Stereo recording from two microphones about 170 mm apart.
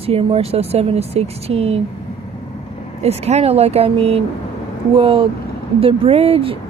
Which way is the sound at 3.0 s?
40° right (ahead or behind).